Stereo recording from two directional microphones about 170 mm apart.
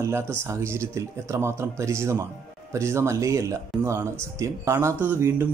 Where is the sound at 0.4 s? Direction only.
15° right (ahead or behind).